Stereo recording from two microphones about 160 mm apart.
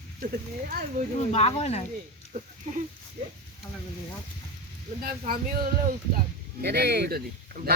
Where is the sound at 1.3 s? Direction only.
40° left (ahead or behind).